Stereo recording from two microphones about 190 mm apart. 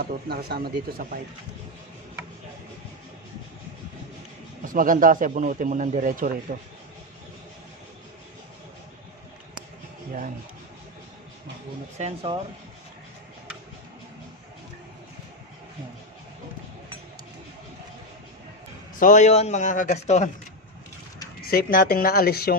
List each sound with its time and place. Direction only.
0.0 s speech: 55° right (ahead or behind)
4.6 s speech: 45° right (ahead or behind)
12.0 s speech: 30° right (ahead or behind)
18.9 s a man's voice: 40° left (ahead or behind)
21.4 s speech: 50° left (ahead or behind)